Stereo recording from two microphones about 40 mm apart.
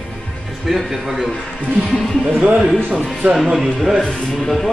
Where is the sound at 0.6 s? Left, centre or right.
Centre.